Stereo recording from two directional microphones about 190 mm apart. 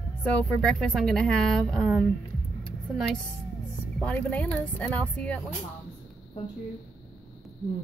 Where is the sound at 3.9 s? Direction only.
5° left (ahead or behind).